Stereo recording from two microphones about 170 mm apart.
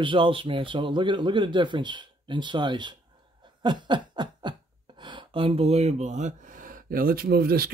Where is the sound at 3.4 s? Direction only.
25° right (ahead or behind); by 7.7 s 65° right (ahead or behind).